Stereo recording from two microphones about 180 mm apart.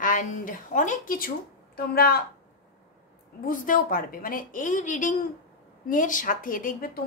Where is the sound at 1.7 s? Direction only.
60° left (ahead or behind).